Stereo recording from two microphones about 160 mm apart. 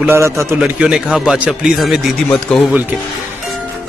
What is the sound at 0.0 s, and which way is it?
Speech, 15° right (ahead or behind).